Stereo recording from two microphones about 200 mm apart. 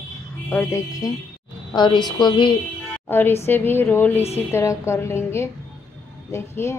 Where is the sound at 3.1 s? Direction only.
10° left (ahead or behind).